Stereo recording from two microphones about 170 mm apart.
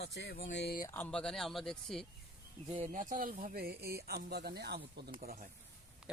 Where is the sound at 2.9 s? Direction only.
50° right (ahead or behind).